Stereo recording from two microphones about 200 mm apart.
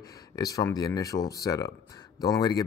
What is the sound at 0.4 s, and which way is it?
Speech, 20° left (ahead or behind).